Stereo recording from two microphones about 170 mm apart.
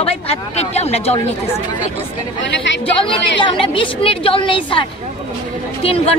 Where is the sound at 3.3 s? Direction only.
30° left (ahead or behind).